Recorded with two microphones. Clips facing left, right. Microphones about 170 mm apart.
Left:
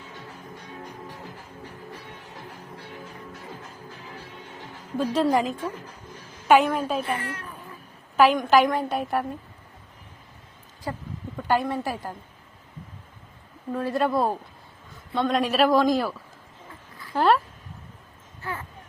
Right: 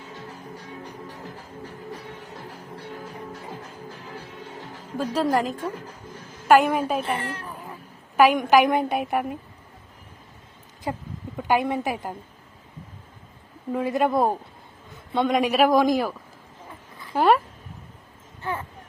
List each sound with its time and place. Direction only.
4.9 s a woman's voice: 5° right (ahead or behind)
6.5 s a woman's voice: 10° right (ahead or behind)
7.0 s a child's voice: 30° right (ahead or behind)
8.1 s a woman's voice: 15° right (ahead or behind)
10.9 s a woman's voice: 15° right (ahead or behind)
13.7 s a woman's voice: 15° right (ahead or behind)
17.2 s a woman's voice: 10° right (ahead or behind)